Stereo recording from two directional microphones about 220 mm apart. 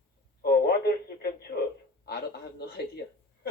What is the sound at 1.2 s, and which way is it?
Radio, 45° left (ahead or behind).